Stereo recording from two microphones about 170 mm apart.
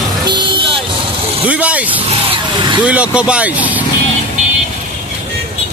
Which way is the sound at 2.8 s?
5° right (ahead or behind).